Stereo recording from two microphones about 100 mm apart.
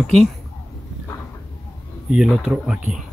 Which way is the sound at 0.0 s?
Centre (ahead or behind).